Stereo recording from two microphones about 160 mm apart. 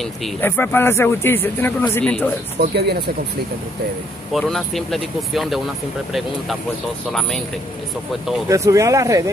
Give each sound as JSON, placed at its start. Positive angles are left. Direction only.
{"t": 0.4, "sound": "a man's voice", "side_deg": 10}
{"t": 2.6, "sound": "speech", "side_deg": -90}
{"t": 4.3, "sound": "speech", "side_deg": 0}
{"t": 7.1, "sound": "speech", "side_deg": 5}
{"t": 8.5, "sound": "speech", "side_deg": -20}